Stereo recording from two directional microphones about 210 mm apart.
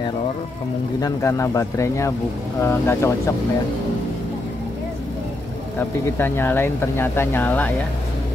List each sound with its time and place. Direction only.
1.0 s speech: 15° left (ahead or behind)
5.8 s speech: 10° left (ahead or behind)